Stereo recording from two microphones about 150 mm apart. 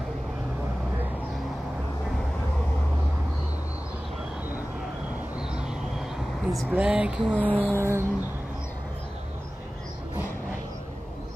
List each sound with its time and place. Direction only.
5.5 s a sound: 5° right (ahead or behind)
7.2 s music: 10° left (ahead or behind)
7.7 s music: 20° right (ahead or behind)